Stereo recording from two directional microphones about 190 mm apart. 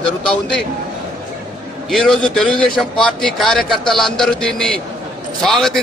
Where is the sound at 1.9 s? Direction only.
Centre (ahead or behind).